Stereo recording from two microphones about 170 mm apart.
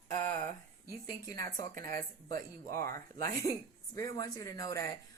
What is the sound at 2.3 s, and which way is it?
A woman's voice, 60° right (ahead or behind).